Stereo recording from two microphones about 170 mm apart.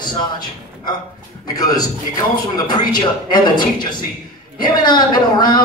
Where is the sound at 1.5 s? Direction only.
20° left (ahead or behind).